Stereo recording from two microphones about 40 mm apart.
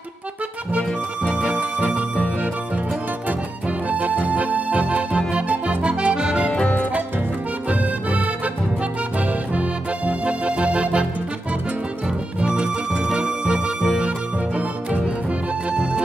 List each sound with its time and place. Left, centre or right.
1.3 s music: right
3.9 s music: right
5.8 s accordion: right
9.5 s accordion: right
12.4 s music: right
15.7 s music: right